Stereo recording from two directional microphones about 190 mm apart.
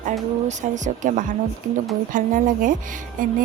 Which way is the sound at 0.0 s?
40° right (ahead or behind).